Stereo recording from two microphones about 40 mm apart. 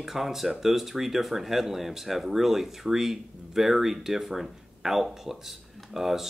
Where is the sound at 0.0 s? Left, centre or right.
Centre.